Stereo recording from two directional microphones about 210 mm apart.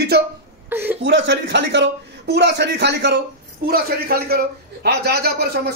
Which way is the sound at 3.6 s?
45° right (ahead or behind).